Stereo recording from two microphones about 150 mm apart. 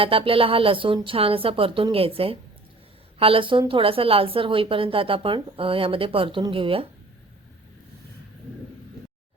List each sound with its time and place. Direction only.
0.0 s a woman's voice: 35° right (ahead or behind)